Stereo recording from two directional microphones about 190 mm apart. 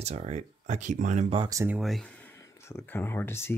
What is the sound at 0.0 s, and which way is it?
Speech, 35° right (ahead or behind).